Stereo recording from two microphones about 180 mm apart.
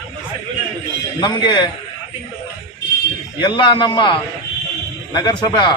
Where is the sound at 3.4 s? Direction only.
25° left (ahead or behind).